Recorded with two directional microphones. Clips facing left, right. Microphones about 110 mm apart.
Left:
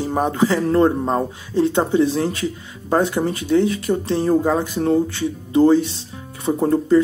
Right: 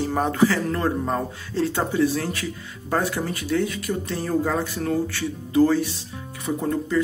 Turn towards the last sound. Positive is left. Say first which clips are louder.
# left 8 dB
turn(degrees=30)  # may be behind; listen again after turning